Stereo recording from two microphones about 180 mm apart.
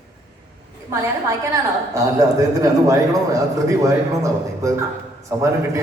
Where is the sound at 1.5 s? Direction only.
20° right (ahead or behind).